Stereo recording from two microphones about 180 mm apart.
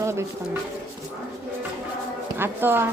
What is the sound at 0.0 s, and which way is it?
Speech, 15° right (ahead or behind).